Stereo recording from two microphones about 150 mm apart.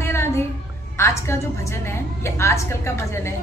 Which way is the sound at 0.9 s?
15° left (ahead or behind).